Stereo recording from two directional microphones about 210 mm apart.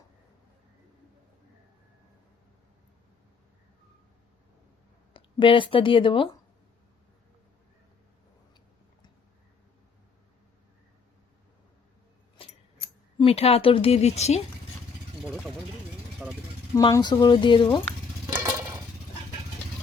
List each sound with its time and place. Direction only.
5.1 s speech: 25° left (ahead or behind)
12.4 s keys jangling: 25° left (ahead or behind)
13.1 s a woman's voice: 30° left (ahead or behind)
16.2 s speech: centre (ahead or behind)
16.7 s a woman's voice: 20° left (ahead or behind)
18.3 s a sound: 10° right (ahead or behind)